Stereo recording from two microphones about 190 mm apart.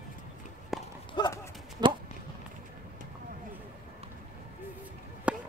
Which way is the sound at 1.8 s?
20° right (ahead or behind).